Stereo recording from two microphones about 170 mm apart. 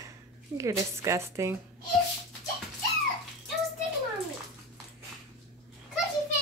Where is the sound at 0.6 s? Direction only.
15° right (ahead or behind).